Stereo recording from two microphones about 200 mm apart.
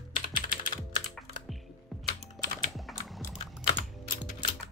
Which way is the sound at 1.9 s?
Centre (ahead or behind).